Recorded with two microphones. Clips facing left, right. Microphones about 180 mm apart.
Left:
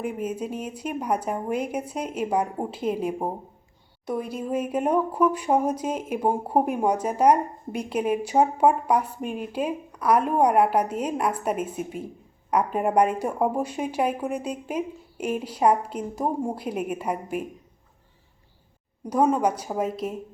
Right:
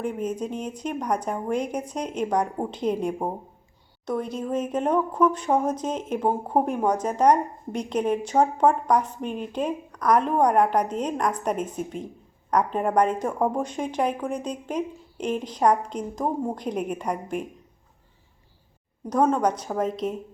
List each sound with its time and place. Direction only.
0.0 s speech: 10° left (ahead or behind)
19.1 s speech: 10° left (ahead or behind)